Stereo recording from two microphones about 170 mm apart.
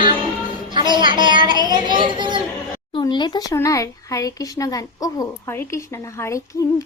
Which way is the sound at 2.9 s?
25° left (ahead or behind).